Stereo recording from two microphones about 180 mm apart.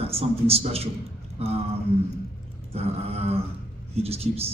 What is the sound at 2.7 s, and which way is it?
A man's voice, 35° right (ahead or behind).